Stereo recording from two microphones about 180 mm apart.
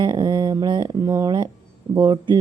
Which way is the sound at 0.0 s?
25° right (ahead or behind).